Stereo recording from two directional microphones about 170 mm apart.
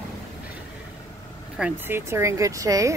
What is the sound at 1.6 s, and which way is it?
Speech, 15° right (ahead or behind).